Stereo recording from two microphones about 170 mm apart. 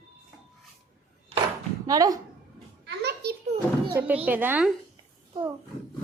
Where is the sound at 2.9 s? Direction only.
75° right (ahead or behind).